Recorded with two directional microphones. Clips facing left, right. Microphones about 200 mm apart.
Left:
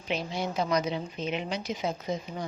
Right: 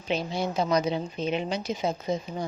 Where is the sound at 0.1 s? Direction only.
35° right (ahead or behind).